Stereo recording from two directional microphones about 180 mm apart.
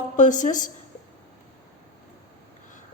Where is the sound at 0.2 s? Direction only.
45° left (ahead or behind).